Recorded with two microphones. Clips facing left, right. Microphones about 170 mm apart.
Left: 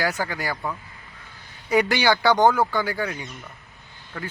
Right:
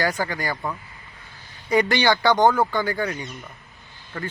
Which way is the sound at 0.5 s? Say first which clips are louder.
Right 1 dB; 10° right (ahead or behind).